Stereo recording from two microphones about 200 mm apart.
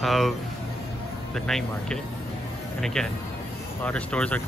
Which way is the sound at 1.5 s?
Centre (ahead or behind).